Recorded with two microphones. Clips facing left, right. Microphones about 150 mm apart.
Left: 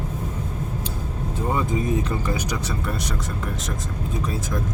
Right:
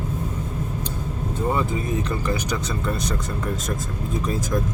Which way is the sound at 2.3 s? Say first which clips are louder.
Right 1 dB; 10° left (ahead or behind).